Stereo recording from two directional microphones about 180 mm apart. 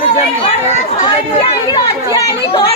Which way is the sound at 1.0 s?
25° left (ahead or behind).